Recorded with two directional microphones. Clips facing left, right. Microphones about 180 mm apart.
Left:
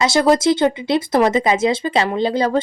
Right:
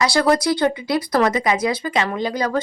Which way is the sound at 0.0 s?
20° left (ahead or behind).